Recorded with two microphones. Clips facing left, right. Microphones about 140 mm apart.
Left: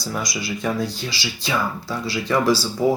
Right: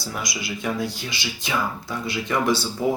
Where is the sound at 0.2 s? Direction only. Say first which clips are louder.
Left 2 dB; 20° right (ahead or behind).